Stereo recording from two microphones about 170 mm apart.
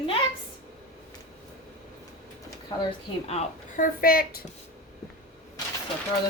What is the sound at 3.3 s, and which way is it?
Speech, 45° left (ahead or behind).